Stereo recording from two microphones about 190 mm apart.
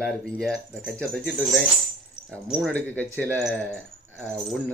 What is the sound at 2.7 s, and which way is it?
Speech, 10° left (ahead or behind).